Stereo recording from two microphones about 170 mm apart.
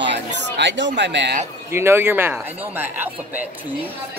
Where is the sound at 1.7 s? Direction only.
15° right (ahead or behind).